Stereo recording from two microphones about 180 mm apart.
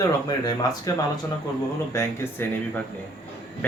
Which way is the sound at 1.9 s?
15° left (ahead or behind).